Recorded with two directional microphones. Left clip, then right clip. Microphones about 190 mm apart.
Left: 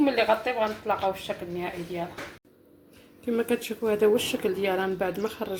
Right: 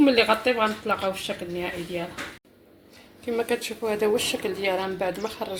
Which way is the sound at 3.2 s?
40° left (ahead or behind).